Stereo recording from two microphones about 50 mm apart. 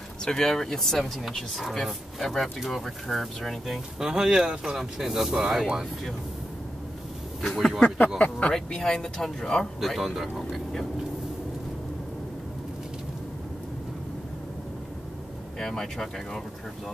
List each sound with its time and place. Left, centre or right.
0.2 s speech: centre
4.0 s speech: centre
7.4 s speech: centre
8.2 s speech: left
8.5 s speech: centre
9.8 s speech: centre
15.6 s speech: centre